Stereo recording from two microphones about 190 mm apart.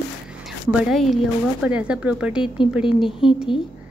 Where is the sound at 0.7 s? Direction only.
Centre (ahead or behind).